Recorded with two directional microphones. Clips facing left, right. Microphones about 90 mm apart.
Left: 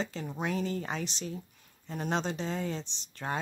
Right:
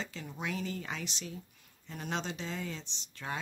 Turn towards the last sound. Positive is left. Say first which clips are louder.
# left 4 dB
turn(degrees=40)  # may be behind; listen again after turning